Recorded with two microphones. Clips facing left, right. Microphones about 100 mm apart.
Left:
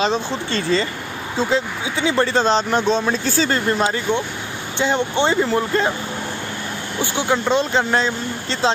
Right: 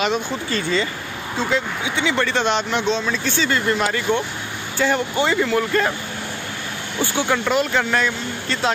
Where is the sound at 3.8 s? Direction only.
20° left (ahead or behind).